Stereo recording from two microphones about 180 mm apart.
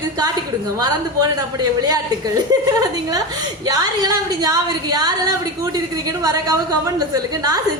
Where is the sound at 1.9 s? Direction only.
20° right (ahead or behind).